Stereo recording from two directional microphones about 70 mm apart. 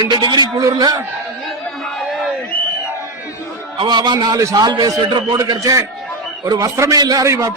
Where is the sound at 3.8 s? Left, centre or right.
Right.